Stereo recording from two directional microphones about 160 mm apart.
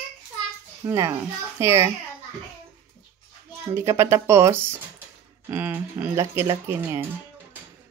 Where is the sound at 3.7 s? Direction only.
15° right (ahead or behind).